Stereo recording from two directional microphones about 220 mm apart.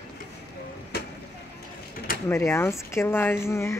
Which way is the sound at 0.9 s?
45° left (ahead or behind).